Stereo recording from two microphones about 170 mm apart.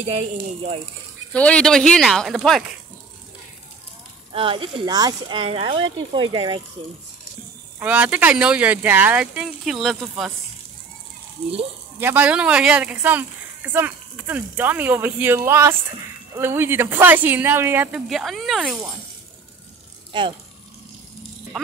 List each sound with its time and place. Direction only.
0.0 s speech: 35° right (ahead or behind)
1.3 s speech: 5° left (ahead or behind)
4.3 s speech: 30° right (ahead or behind)
7.8 s speech: 10° right (ahead or behind)
12.0 s speech: 10° right (ahead or behind)
18.0 s speech: centre (ahead or behind)
20.1 s speech: 30° right (ahead or behind)